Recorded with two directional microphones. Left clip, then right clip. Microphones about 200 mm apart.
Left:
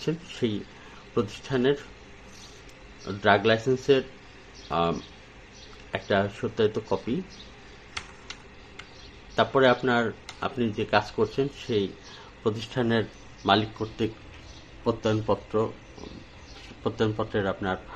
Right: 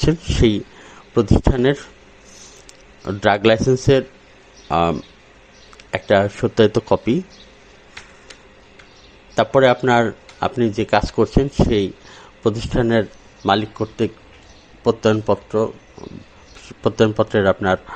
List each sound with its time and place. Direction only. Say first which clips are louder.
0.0 s speech: right 12 dB; 40° right (ahead or behind)
3.1 s speech: right 7 dB; 40° right (ahead or behind)
9.3 s a man's voice: right 7 dB; 35° right (ahead or behind)
16.8 s speech: right 11 dB; 35° right (ahead or behind)